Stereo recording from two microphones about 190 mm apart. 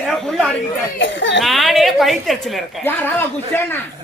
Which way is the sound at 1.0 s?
75° left (ahead or behind).